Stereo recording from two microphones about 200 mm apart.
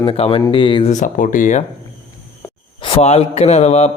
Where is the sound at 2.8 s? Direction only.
30° left (ahead or behind).